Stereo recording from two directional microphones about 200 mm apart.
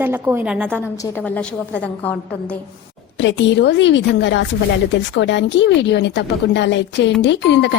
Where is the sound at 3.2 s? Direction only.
60° left (ahead or behind).